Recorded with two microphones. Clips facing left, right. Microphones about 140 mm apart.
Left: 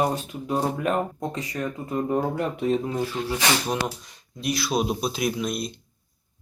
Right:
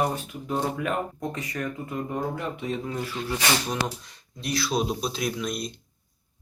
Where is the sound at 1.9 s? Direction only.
40° left (ahead or behind).